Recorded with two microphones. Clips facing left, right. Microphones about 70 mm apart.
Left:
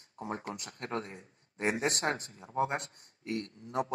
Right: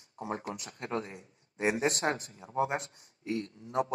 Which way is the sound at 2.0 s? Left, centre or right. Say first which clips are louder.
Right 1 dB; right.